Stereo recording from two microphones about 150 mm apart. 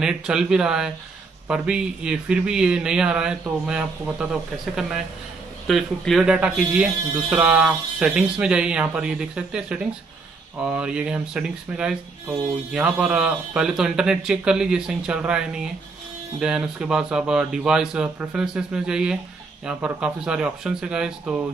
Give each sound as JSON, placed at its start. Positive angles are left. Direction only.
{"t": 0.0, "sound": "speech", "side_deg": -5}